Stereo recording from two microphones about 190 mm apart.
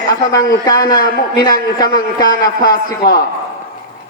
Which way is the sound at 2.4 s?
20° left (ahead or behind).